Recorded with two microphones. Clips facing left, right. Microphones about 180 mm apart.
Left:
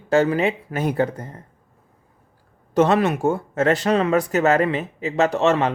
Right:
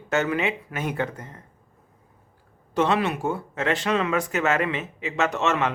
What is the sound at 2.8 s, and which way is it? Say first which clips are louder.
Speech: left 5 dB; 45° left (ahead or behind).